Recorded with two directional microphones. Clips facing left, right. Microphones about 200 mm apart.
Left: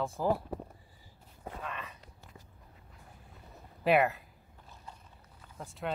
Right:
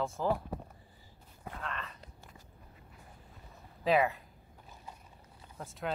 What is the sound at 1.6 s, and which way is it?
Dog, 10° left (ahead or behind).